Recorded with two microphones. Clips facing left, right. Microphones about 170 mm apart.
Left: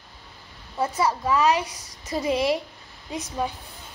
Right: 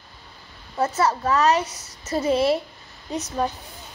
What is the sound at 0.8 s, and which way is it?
A woman's voice, 10° left (ahead or behind).